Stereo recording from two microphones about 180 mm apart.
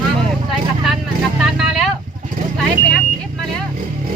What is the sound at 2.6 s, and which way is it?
Speech, 5° left (ahead or behind).